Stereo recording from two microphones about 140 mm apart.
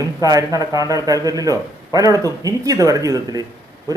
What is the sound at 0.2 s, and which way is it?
A man's voice, 25° right (ahead or behind).